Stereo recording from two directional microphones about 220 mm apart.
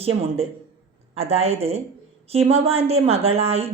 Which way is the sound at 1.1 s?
25° right (ahead or behind).